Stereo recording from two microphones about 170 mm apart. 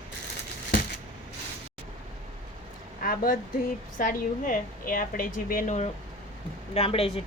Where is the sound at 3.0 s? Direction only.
55° left (ahead or behind).